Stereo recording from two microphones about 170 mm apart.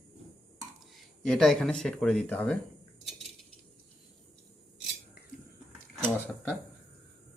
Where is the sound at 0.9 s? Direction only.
5° left (ahead or behind).